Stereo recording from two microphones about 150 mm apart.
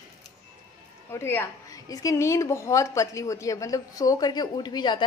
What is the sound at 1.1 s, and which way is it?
A woman's voice, 15° left (ahead or behind).